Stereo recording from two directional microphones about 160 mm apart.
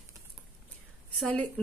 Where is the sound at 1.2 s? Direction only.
10° left (ahead or behind).